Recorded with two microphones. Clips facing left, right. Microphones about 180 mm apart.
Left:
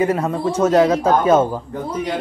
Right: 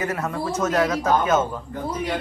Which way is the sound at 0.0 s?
30° left (ahead or behind).